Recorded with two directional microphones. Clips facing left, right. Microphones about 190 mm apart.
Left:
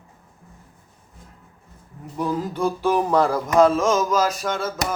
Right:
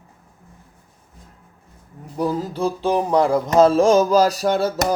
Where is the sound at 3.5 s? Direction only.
30° right (ahead or behind).